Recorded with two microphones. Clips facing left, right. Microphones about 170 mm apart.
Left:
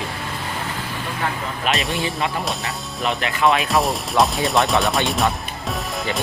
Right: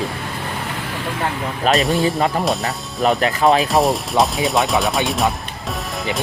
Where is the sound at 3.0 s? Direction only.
40° right (ahead or behind).